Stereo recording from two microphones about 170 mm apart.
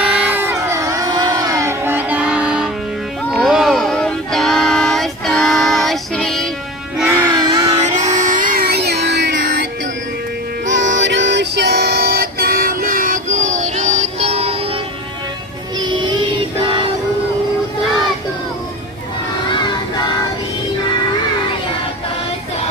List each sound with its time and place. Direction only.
0.0 s a sound: 10° right (ahead or behind)
7.0 s music: 10° right (ahead or behind)
7.3 s music: 25° right (ahead or behind)
7.7 s music: 40° right (ahead or behind); by 9.5 s 85° right
10.7 s music: 90° right; by 14.8 s 35° right (ahead or behind)
15.8 s child singing: 25° right (ahead or behind)
19.5 s music: 25° left (ahead or behind)